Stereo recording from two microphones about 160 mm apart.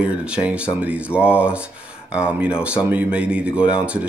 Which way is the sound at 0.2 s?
5° right (ahead or behind).